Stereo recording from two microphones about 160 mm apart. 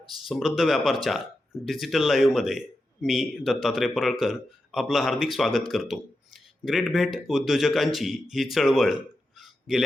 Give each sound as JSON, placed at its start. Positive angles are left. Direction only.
{"t": 0.3, "sound": "speech", "side_deg": 0}